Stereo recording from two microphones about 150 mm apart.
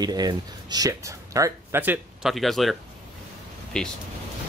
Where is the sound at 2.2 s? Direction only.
Centre (ahead or behind).